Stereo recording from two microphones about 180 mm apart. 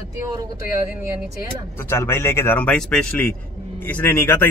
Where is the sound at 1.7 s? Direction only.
15° left (ahead or behind).